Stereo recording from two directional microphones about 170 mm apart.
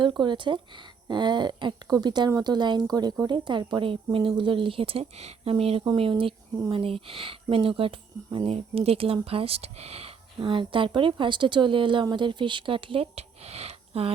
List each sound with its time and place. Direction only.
0.0 s a woman's voice: 25° right (ahead or behind)